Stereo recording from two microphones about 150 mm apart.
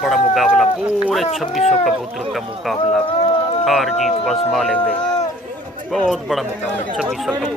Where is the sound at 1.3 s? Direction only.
Centre (ahead or behind).